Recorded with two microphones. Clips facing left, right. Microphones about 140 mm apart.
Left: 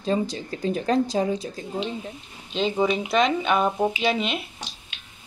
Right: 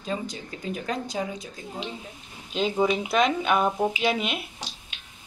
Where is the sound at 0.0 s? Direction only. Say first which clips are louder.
Left 7 dB; 35° left (ahead or behind).